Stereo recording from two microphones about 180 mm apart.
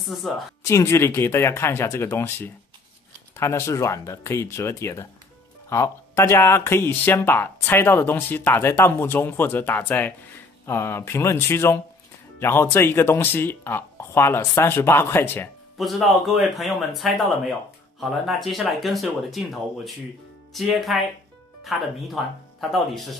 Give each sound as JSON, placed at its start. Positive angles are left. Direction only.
{"t": 0.0, "sound": "speech", "side_deg": 0}
{"t": 0.7, "sound": "speech", "side_deg": 15}
{"t": 15.8, "sound": "speech", "side_deg": 0}